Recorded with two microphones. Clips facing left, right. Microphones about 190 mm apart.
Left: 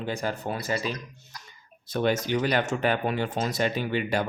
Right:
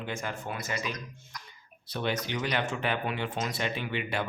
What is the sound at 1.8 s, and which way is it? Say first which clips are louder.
Speech: left 7 dB; 45° left (ahead or behind).